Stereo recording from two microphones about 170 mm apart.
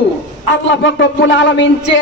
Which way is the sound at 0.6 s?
90° left.